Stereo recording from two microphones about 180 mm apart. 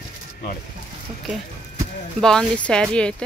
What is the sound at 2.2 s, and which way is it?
Speech, 5° left (ahead or behind).